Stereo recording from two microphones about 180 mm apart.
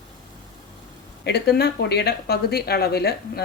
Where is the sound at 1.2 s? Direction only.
65° left (ahead or behind).